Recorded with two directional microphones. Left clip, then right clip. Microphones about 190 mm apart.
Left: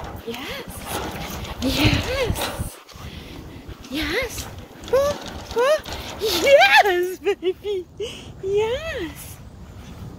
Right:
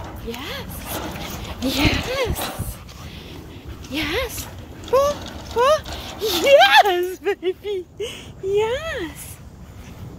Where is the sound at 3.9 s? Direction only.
5° right (ahead or behind).